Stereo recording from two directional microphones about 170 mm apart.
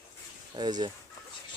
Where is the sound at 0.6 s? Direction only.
25° right (ahead or behind).